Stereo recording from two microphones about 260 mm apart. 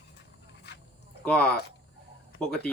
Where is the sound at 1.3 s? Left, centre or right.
Centre.